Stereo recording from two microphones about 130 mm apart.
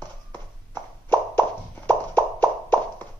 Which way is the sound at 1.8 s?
15° left (ahead or behind).